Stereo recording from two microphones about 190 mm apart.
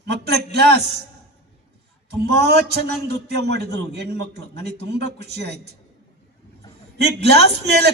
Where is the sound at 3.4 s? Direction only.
65° right (ahead or behind).